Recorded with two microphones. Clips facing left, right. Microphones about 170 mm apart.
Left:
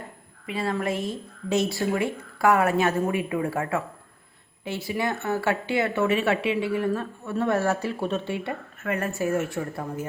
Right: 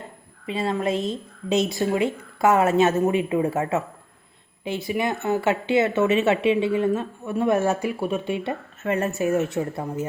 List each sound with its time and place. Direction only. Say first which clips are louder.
0.4 s speech: right 3 dB; 25° right (ahead or behind)